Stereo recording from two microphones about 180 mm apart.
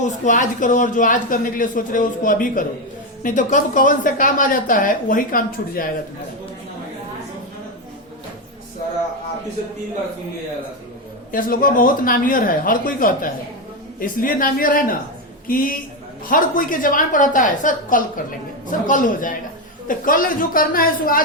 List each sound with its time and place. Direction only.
0.0 s a woman's voice: 45° left (ahead or behind)
11.3 s a woman's voice: 50° left (ahead or behind)